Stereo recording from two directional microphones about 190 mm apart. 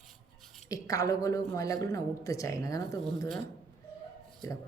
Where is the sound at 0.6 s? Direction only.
15° left (ahead or behind).